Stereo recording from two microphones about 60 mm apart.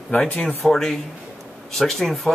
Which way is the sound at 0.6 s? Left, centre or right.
Centre.